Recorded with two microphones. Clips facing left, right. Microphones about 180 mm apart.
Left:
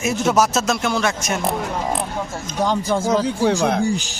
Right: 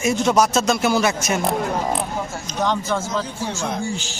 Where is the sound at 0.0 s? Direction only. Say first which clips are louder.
Even; 5° left (ahead or behind).